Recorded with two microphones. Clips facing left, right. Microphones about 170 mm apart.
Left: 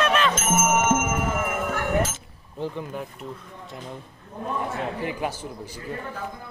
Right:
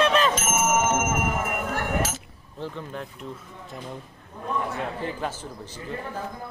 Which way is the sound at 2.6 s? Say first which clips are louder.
Left 3 dB; 15° left (ahead or behind).